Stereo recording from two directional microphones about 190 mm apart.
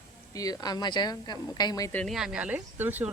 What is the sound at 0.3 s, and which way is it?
Speech, 20° left (ahead or behind).